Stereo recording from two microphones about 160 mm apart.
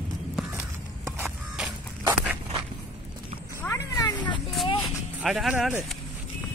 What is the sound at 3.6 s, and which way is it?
Cat, 15° left (ahead or behind).